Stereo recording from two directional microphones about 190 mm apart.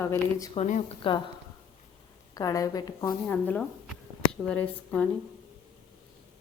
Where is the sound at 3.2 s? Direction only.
10° left (ahead or behind).